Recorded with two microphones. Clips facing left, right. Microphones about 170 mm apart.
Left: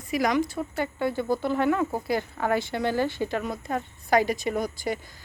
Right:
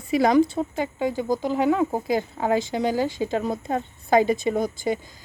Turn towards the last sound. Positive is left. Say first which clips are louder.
# right 4 dB
turn(degrees=-25)  # may be behind; listen again after turning